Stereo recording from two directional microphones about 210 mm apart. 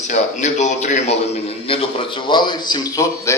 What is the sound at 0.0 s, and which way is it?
A man's voice, 35° left (ahead or behind).